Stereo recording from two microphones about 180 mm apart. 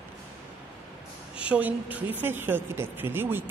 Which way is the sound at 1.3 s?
5° right (ahead or behind).